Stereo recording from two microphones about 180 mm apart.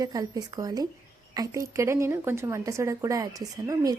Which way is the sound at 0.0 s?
20° right (ahead or behind).